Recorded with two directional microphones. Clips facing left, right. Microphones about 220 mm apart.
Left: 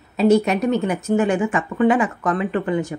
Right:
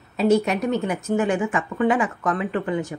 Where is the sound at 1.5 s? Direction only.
35° left (ahead or behind).